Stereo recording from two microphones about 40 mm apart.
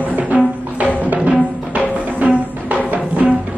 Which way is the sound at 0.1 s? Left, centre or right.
Right.